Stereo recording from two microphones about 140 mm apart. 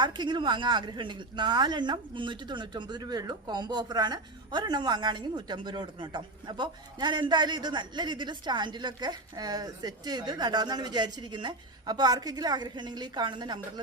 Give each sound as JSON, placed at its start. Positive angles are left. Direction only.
{"t": 0.0, "sound": "speech", "side_deg": -30}